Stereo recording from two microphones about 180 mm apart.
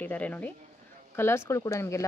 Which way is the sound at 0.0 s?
10° left (ahead or behind).